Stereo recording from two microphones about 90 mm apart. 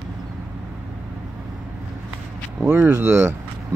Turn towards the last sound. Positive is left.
turn(degrees=-25)  # may be behind; listen again after turning